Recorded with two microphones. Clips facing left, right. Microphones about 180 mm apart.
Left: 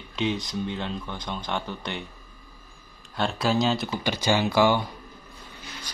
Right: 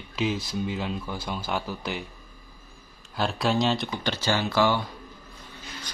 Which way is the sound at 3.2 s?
Centre (ahead or behind).